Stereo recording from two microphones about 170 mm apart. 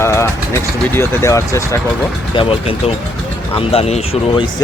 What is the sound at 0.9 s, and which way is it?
Speech, 15° left (ahead or behind).